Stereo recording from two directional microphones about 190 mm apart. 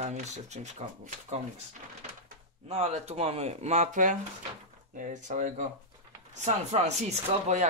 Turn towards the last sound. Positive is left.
turn(degrees=-35)  # may be behind; listen again after turning